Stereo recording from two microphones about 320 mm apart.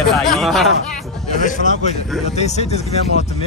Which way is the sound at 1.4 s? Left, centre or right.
Left.